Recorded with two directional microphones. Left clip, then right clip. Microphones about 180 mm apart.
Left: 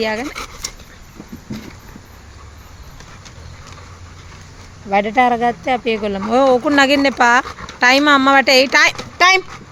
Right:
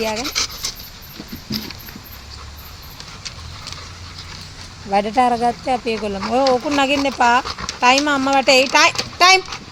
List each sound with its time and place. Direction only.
0.0 s speech: 15° left (ahead or behind)
4.9 s speech: 15° left (ahead or behind)
6.3 s speech: 35° left (ahead or behind)
7.4 s dog: 15° right (ahead or behind)
7.8 s speech: 35° left (ahead or behind)
9.0 s a sound: 20° left (ahead or behind)